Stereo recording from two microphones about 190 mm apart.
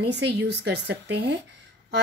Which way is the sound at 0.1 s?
60° right (ahead or behind).